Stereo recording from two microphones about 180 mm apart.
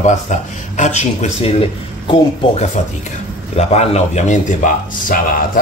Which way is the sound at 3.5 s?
35° left (ahead or behind).